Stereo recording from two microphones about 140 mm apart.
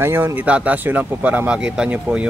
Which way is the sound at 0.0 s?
15° right (ahead or behind).